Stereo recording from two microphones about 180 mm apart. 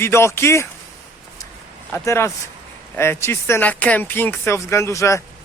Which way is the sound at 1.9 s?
15° left (ahead or behind).